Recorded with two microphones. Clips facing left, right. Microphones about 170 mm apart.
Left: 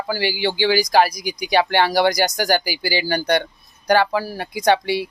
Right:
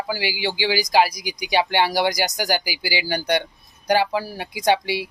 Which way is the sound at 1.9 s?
50° left (ahead or behind).